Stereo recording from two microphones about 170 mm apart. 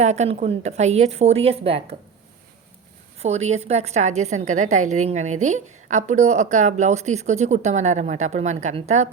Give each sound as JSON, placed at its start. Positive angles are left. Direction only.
{"t": 0.0, "sound": "a woman's voice", "side_deg": -40}
{"t": 3.2, "sound": "a woman's voice", "side_deg": -40}